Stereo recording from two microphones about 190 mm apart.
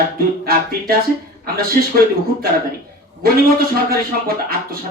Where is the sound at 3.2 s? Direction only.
50° right (ahead or behind).